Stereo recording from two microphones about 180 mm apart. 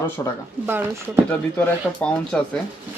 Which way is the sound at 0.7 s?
10° right (ahead or behind).